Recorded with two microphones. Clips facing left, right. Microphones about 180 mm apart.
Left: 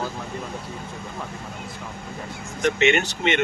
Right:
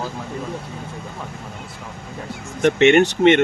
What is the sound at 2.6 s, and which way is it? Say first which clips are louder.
Speech: right 7 dB; 55° right (ahead or behind).